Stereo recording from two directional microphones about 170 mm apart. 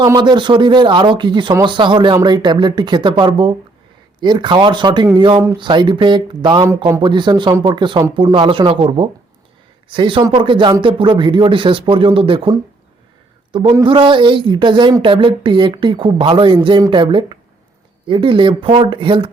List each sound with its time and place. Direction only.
0.0 s a woman's voice: 25° right (ahead or behind)